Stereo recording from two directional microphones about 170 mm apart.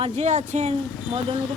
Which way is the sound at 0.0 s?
40° right (ahead or behind).